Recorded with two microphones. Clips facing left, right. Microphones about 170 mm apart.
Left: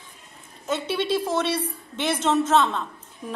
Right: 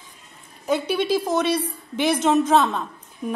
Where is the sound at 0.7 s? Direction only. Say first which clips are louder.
Right 3 dB; 25° left (ahead or behind).